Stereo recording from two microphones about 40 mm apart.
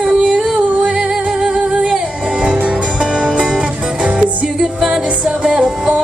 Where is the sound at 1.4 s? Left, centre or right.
Centre.